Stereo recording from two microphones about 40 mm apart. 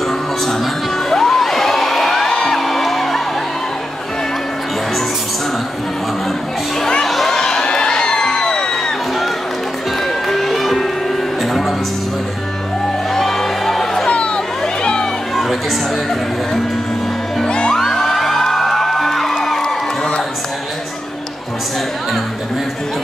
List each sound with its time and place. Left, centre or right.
1.1 s music: centre
7.1 s music: centre
10.0 s music: centre
13.1 s music: centre
14.0 s chatter: left
14.8 s a sound: left
17.6 s music: centre